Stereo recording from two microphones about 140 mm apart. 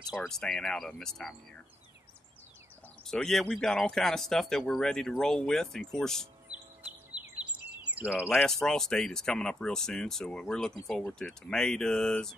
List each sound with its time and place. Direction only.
0.1 s speech: centre (ahead or behind)
3.1 s speech: 5° left (ahead or behind)
6.5 s chirp: 10° right (ahead or behind)
7.1 s a sound: 30° left (ahead or behind)
7.8 s a sound: 10° right (ahead or behind)
8.4 s speech: 5° left (ahead or behind)